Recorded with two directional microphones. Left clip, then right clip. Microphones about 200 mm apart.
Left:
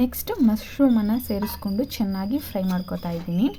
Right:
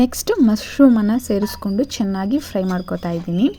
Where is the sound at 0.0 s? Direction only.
30° right (ahead or behind).